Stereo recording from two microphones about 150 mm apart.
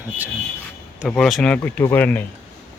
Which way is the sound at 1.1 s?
Centre (ahead or behind).